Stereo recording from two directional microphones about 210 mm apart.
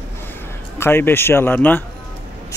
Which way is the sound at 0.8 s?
10° left (ahead or behind).